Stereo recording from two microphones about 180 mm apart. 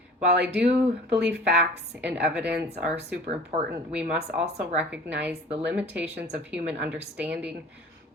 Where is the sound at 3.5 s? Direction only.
35° right (ahead or behind).